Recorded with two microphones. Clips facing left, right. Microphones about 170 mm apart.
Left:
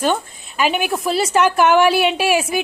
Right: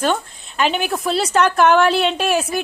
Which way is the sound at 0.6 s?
5° left (ahead or behind).